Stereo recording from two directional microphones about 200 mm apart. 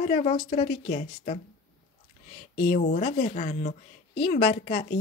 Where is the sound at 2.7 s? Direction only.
45° left (ahead or behind).